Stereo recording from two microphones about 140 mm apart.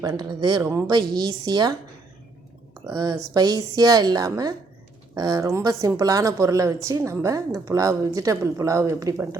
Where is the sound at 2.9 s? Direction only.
25° right (ahead or behind).